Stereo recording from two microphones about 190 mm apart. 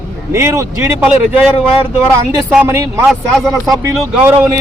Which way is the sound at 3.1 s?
Centre (ahead or behind).